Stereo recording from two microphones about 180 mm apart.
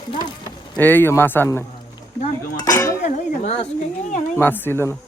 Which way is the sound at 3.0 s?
40° left (ahead or behind).